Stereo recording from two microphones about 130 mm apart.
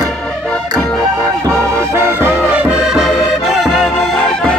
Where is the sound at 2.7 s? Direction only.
5° right (ahead or behind).